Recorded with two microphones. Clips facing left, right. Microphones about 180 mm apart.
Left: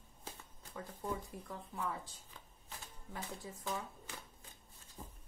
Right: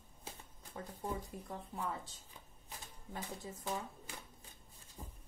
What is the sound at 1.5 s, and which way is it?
Speech, 35° right (ahead or behind).